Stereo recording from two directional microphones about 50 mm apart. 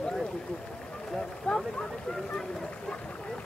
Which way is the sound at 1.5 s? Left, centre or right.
Left.